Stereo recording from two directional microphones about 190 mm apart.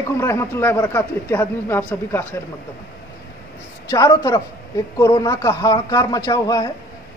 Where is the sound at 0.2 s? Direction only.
15° left (ahead or behind).